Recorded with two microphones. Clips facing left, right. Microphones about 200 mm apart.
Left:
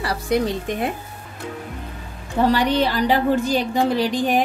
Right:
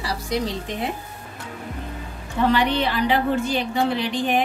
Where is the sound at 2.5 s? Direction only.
40° left (ahead or behind).